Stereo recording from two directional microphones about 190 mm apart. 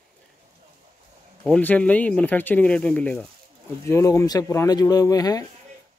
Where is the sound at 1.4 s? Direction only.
10° left (ahead or behind).